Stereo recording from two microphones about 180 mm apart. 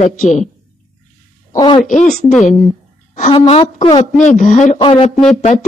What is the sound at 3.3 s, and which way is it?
Speech, 30° left (ahead or behind).